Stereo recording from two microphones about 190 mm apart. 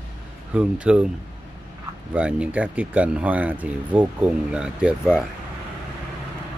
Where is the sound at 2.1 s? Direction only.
5° right (ahead or behind).